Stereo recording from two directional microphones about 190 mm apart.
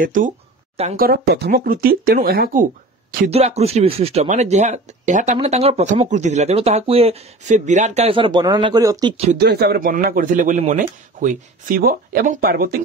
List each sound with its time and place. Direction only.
0.0 s speech: 45° right (ahead or behind)
3.3 s speech: 35° right (ahead or behind); by 9.1 s 20° right (ahead or behind)
9.1 s speech: 35° right (ahead or behind)
9.4 s speech: 60° right (ahead or behind)